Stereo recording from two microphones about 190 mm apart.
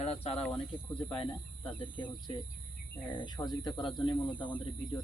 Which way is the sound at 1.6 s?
25° left (ahead or behind).